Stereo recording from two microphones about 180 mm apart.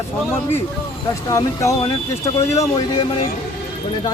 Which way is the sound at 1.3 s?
15° left (ahead or behind).